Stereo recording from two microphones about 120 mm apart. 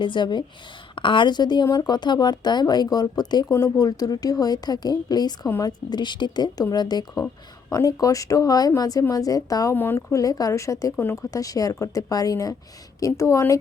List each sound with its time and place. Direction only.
0.0 s speech: 40° left (ahead or behind)
9.7 s speech: 20° left (ahead or behind)